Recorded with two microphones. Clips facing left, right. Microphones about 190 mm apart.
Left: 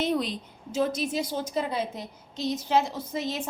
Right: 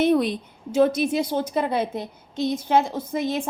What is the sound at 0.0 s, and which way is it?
A woman's voice, 60° right (ahead or behind).